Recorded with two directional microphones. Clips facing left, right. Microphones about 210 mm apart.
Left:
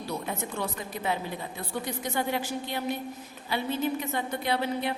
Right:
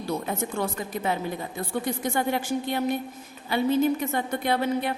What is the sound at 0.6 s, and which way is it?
A woman's voice, 50° right (ahead or behind).